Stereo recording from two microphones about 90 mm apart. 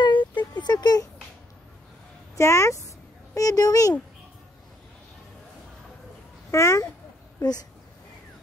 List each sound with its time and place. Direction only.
0.0 s a sound: 60° left (ahead or behind)
2.3 s a child's voice: 35° left (ahead or behind)
6.5 s a child's voice: 35° left (ahead or behind)